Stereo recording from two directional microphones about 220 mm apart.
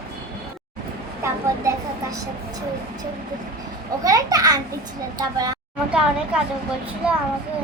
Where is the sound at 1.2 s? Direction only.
15° right (ahead or behind).